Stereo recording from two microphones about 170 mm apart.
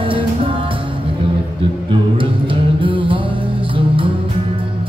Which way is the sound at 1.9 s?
30° right (ahead or behind).